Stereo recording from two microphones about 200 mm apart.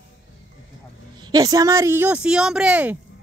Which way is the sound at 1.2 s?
20° right (ahead or behind).